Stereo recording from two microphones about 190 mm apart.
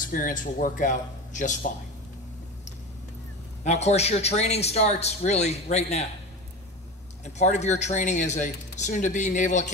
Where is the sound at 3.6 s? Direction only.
35° left (ahead or behind).